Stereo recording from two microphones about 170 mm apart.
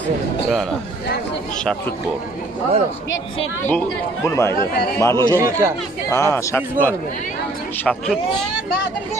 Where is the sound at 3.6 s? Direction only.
10° left (ahead or behind).